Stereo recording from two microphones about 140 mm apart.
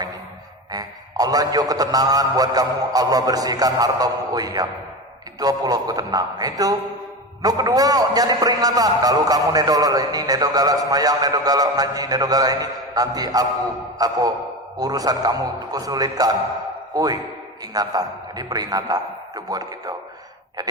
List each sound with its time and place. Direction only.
0.7 s a man's voice: 25° right (ahead or behind)